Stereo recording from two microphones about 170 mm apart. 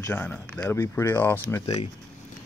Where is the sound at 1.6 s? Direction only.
30° left (ahead or behind).